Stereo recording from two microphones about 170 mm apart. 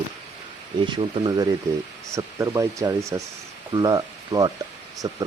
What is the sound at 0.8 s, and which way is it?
Speech, 25° right (ahead or behind).